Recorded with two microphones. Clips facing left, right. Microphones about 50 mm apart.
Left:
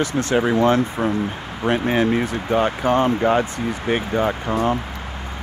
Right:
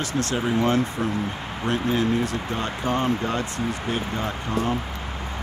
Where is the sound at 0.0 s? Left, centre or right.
Left.